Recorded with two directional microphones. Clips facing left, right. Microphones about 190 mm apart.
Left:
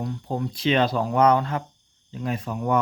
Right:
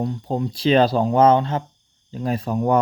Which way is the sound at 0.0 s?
25° right (ahead or behind).